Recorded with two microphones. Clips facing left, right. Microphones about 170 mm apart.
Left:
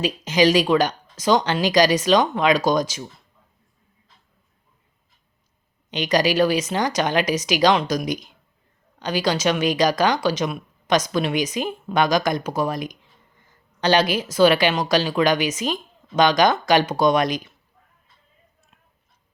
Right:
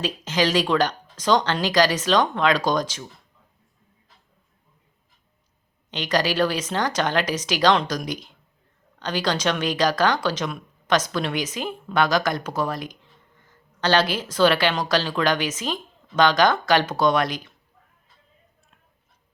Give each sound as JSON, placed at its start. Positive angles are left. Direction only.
{"t": 0.0, "sound": "speech", "side_deg": 15}
{"t": 5.9, "sound": "speech", "side_deg": 15}